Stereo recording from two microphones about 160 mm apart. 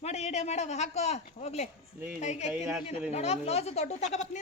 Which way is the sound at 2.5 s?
10° right (ahead or behind).